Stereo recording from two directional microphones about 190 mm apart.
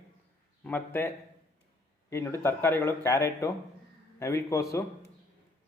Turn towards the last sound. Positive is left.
turn(degrees=15)  # may be behind; listen again after turning